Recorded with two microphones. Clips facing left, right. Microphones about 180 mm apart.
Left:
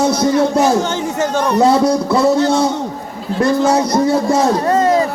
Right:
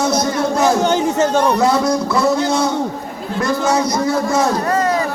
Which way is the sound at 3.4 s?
30° left (ahead or behind).